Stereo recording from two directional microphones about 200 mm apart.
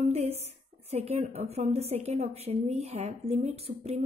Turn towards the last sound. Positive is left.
turn(degrees=-30)  # may be behind; listen again after turning